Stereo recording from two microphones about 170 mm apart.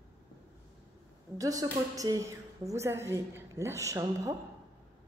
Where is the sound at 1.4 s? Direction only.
20° right (ahead or behind).